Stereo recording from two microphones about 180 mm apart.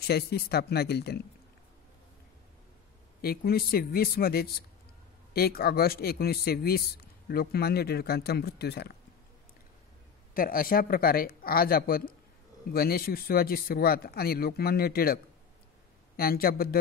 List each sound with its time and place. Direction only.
0.0 s speech: 60° left (ahead or behind)
3.2 s speech: 60° left (ahead or behind)
10.3 s speech: 55° left (ahead or behind)
16.2 s speech: 55° left (ahead or behind)